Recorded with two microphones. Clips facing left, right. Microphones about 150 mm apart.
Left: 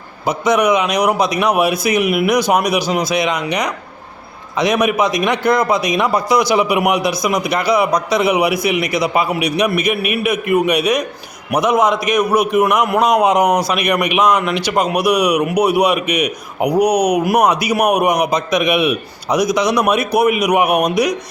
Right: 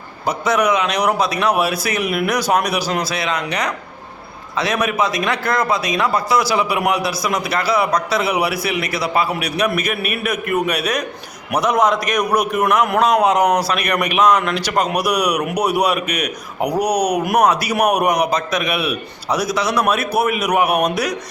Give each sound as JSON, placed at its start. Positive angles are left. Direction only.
{"t": 0.3, "sound": "a man's voice", "side_deg": 15}